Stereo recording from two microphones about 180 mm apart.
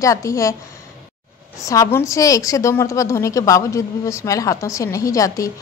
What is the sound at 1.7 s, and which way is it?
A woman's voice, 15° left (ahead or behind).